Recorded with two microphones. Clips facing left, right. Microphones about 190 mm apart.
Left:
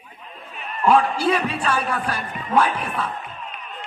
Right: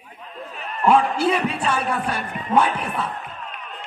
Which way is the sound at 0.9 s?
20° right (ahead or behind).